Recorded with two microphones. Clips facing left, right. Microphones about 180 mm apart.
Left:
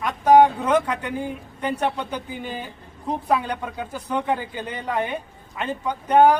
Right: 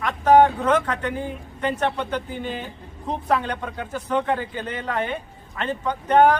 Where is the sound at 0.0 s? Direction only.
15° left (ahead or behind).